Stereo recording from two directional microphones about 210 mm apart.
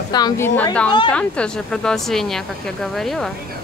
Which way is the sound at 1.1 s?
5° left (ahead or behind).